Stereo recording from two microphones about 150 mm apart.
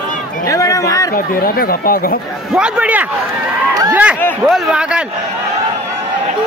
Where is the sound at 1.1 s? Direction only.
75° left (ahead or behind).